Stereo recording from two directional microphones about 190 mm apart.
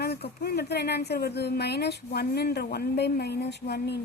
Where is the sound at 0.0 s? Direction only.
55° left (ahead or behind).